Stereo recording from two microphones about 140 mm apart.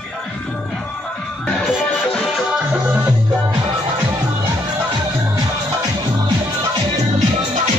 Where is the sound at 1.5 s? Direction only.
5° left (ahead or behind).